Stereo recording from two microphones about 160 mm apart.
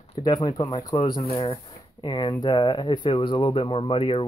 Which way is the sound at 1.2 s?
40° left (ahead or behind).